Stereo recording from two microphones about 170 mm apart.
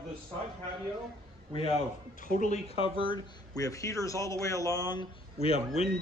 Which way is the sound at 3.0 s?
25° left (ahead or behind).